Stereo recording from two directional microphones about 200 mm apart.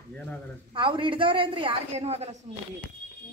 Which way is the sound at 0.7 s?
25° right (ahead or behind).